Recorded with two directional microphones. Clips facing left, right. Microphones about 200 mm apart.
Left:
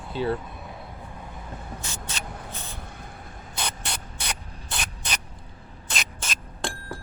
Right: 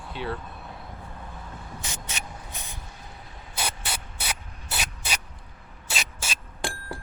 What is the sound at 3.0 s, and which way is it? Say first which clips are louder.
Vehicle: left 3 dB; 55° left (ahead or behind).